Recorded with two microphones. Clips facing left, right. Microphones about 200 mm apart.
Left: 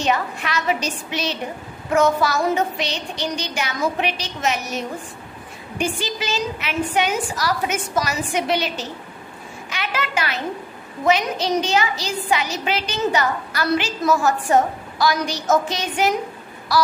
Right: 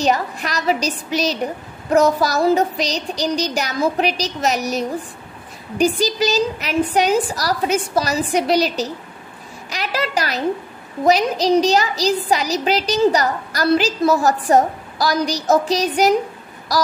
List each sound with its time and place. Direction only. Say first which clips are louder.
0.0 s a woman's voice: right 3 dB; 40° right (ahead or behind)
9.7 s a sound: right 4 dB; 35° right (ahead or behind)
11.1 s a woman's voice: right 4 dB; 35° right (ahead or behind)